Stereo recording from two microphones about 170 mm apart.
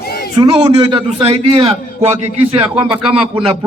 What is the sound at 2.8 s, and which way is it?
Speech, 5° right (ahead or behind).